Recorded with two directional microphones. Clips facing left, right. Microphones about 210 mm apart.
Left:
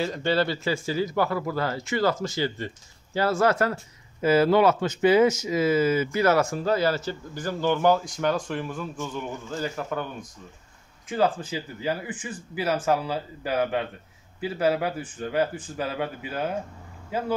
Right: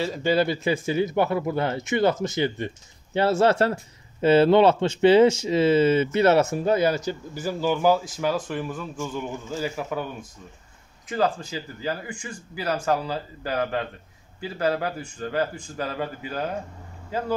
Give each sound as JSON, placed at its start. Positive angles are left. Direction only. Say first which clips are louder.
{"t": 0.0, "sound": "speech", "louder": "right 2 dB", "side_deg": -5}
{"t": 11.1, "sound": "speech", "louder": "even", "side_deg": 5}